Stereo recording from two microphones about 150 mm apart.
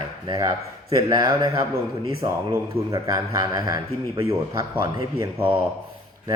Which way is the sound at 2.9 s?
25° right (ahead or behind).